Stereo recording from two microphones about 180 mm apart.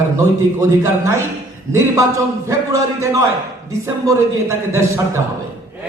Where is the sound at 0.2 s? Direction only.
15° right (ahead or behind).